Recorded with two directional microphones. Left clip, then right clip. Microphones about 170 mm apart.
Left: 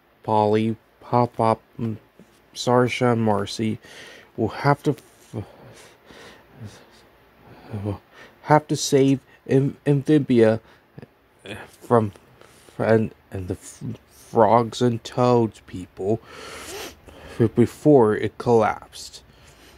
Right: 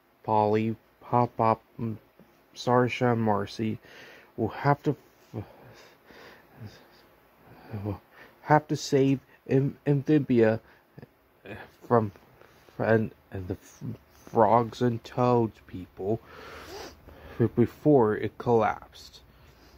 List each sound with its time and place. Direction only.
0.2 s speech: 20° left (ahead or behind)